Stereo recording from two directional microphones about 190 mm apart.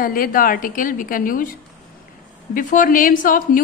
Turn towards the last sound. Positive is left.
turn(degrees=45)  # may be behind; listen again after turning